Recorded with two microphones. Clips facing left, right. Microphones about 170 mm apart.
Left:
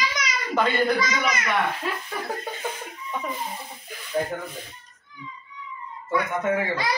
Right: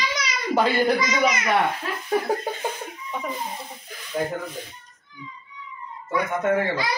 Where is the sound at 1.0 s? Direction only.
20° right (ahead or behind).